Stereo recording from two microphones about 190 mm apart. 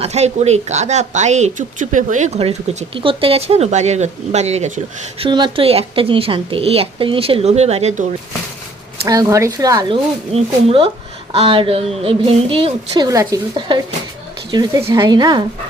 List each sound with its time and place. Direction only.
0.0 s speech: 35° right (ahead or behind)
5.2 s a woman's voice: 25° right (ahead or behind)
9.0 s speech: 15° right (ahead or behind)
10.3 s a woman's voice: 30° right (ahead or behind)